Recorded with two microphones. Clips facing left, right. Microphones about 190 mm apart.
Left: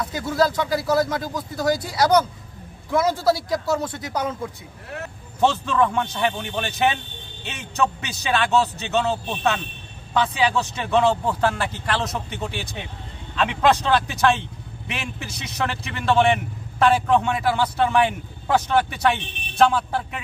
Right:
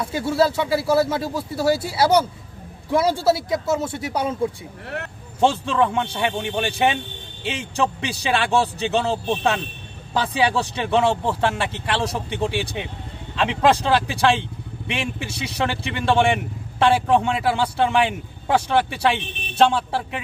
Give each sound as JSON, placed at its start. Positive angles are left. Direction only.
{"t": 0.7, "sound": "a man's voice", "side_deg": -30}